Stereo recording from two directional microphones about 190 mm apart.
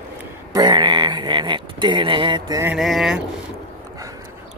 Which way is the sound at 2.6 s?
5° right (ahead or behind).